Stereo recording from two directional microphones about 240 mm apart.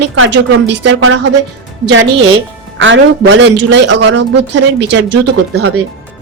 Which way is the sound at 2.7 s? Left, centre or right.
Right.